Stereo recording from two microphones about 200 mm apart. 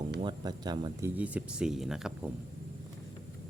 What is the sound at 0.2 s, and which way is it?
Speech, 20° right (ahead or behind).